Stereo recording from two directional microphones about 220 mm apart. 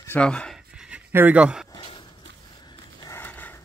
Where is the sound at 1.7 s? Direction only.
20° left (ahead or behind).